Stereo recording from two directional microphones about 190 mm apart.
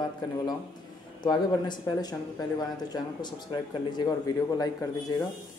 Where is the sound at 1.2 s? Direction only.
20° left (ahead or behind).